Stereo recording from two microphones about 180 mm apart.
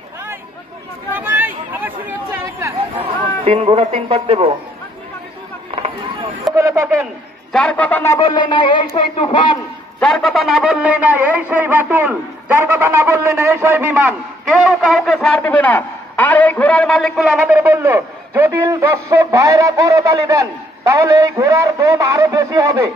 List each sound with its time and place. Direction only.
1.1 s chatter: 10° right (ahead or behind)
3.4 s speech: 35° right (ahead or behind)
6.5 s speech: 15° right (ahead or behind)
7.5 s a man's voice: 5° left (ahead or behind)
8.3 s speech: 25° left (ahead or behind)
9.9 s speech: centre (ahead or behind)
14.7 s a man's voice: centre (ahead or behind)
17.3 s speech: 10° right (ahead or behind)